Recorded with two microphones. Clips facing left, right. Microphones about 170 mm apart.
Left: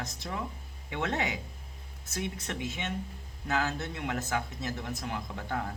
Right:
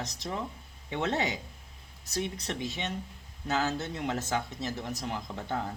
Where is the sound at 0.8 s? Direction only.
35° right (ahead or behind).